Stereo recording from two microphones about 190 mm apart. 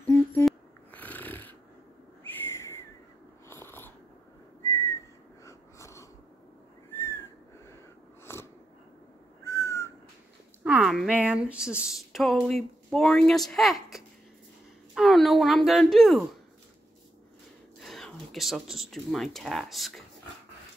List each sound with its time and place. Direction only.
0.0 s a sound: 10° left (ahead or behind)
0.5 s snoring: 10° left (ahead or behind)
2.4 s a sound: 15° left (ahead or behind)
3.4 s biting: 10° left (ahead or behind)
4.6 s whistling: 15° left (ahead or behind)
5.4 s wheeze: 15° left (ahead or behind)
7.0 s whistling: 15° left (ahead or behind)
8.2 s a sound: 15° left (ahead or behind)
9.4 s whistling: 15° left (ahead or behind)
10.6 s speech: 5° right (ahead or behind)
17.7 s speech: centre (ahead or behind)